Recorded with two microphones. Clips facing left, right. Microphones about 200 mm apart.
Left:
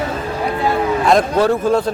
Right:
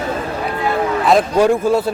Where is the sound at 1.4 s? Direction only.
10° right (ahead or behind).